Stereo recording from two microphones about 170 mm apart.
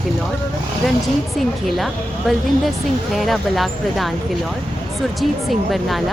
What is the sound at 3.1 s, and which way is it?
Speech, centre (ahead or behind).